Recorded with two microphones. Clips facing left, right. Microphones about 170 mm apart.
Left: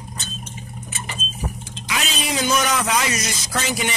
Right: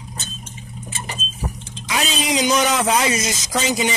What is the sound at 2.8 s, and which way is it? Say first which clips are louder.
Speech: right 4 dB; 30° right (ahead or behind).